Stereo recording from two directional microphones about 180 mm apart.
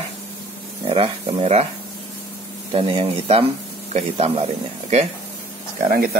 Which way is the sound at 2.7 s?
30° right (ahead or behind).